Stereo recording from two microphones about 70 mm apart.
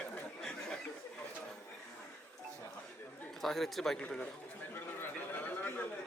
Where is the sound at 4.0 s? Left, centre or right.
Centre.